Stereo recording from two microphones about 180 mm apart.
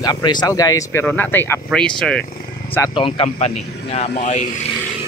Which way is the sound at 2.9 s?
30° left (ahead or behind).